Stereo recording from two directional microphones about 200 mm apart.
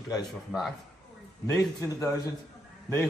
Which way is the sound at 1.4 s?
15° left (ahead or behind).